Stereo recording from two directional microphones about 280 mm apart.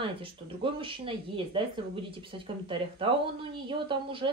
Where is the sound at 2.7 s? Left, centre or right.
Centre.